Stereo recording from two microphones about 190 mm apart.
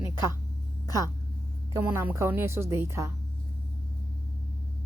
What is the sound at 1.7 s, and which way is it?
A woman's voice, 10° right (ahead or behind).